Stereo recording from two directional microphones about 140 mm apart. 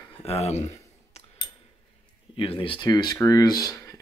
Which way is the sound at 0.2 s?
50° left (ahead or behind).